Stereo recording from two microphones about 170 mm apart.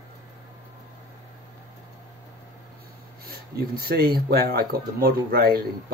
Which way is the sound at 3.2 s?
65° right (ahead or behind).